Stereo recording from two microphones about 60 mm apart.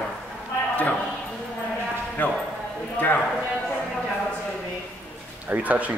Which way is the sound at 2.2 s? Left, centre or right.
Left.